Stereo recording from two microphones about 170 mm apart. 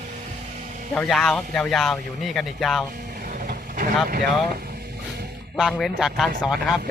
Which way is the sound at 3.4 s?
55° right (ahead or behind).